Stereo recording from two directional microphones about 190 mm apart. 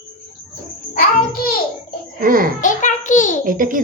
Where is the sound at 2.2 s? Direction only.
50° right (ahead or behind).